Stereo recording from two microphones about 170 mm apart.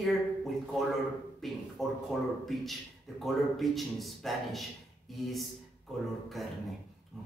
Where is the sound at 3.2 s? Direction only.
Centre (ahead or behind).